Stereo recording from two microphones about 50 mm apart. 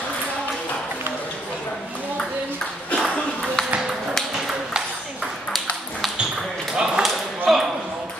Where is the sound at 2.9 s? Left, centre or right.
Centre.